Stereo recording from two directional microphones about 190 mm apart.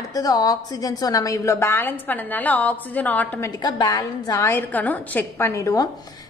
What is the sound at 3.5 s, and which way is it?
A woman's voice, 20° left (ahead or behind).